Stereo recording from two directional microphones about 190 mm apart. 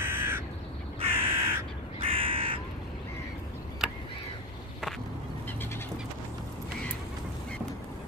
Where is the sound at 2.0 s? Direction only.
30° right (ahead or behind).